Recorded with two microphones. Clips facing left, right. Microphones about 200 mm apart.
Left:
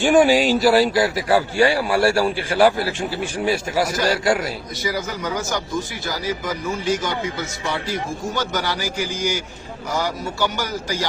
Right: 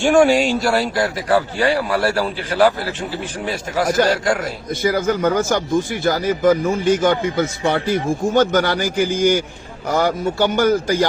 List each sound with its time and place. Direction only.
0.0 s speech: centre (ahead or behind)
3.3 s a man's voice: 10° left (ahead or behind)
4.7 s a man's voice: 55° right (ahead or behind)